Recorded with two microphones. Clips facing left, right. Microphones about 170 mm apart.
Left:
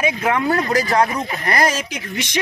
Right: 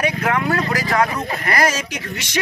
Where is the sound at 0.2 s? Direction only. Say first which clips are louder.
Left 1 dB; 20° left (ahead or behind).